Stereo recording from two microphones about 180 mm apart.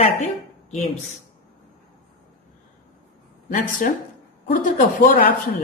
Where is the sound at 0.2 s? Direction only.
40° left (ahead or behind).